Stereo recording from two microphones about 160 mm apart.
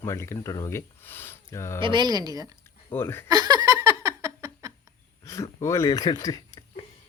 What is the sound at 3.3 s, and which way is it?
Laughter, 25° right (ahead or behind).